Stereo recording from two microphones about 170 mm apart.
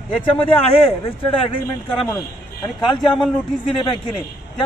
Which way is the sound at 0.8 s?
35° left (ahead or behind).